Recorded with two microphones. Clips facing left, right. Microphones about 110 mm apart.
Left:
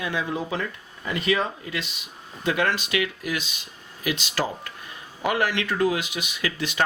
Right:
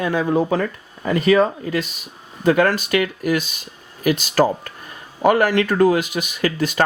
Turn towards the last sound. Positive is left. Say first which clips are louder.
# right 7 dB
turn(degrees=-45)  # may be behind; listen again after turning